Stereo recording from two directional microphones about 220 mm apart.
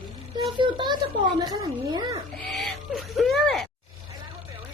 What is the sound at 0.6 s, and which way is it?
Speech, 20° right (ahead or behind).